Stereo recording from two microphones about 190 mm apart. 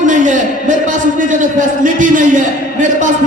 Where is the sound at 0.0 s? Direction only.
40° right (ahead or behind).